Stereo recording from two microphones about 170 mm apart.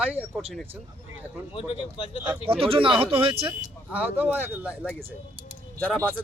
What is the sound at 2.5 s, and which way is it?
Speech, 35° right (ahead or behind).